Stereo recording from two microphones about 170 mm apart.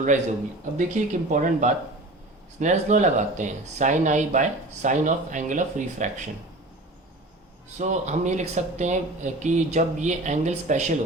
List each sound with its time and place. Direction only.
0.8 s speech: 45° right (ahead or behind)
7.8 s speech: 45° right (ahead or behind)